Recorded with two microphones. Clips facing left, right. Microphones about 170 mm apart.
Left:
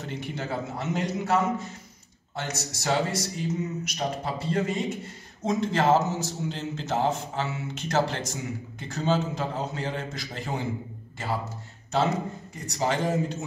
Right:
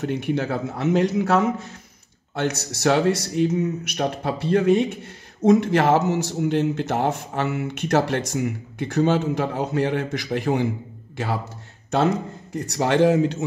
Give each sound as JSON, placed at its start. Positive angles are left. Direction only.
{"t": 0.0, "sound": "a man's voice", "side_deg": -60}
{"t": 12.5, "sound": "a man's voice", "side_deg": -70}